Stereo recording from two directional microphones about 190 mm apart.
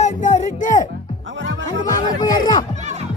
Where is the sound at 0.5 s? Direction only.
45° left (ahead or behind).